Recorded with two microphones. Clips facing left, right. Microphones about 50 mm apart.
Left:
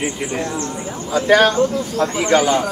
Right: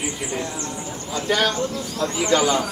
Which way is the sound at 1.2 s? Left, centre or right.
Left.